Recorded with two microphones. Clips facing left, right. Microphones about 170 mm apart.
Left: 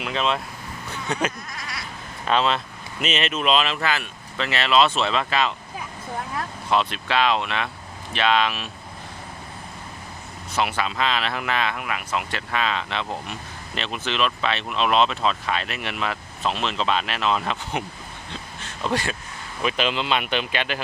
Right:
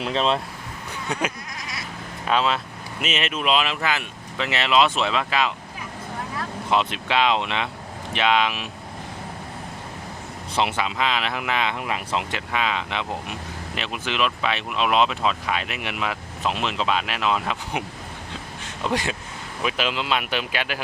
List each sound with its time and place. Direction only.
0.0 s speech: 35° right (ahead or behind)
1.0 s speech: 10° right (ahead or behind)
6.7 s speech: 15° right (ahead or behind)
10.5 s speech: 25° right (ahead or behind); by 17.8 s 10° right (ahead or behind)
18.6 s a sound: 15° right (ahead or behind)
19.6 s speech: 5° right (ahead or behind)